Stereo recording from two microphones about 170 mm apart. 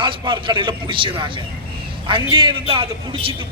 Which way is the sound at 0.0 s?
30° right (ahead or behind).